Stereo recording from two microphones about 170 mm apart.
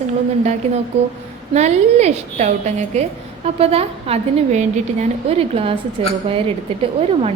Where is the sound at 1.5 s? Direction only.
40° right (ahead or behind).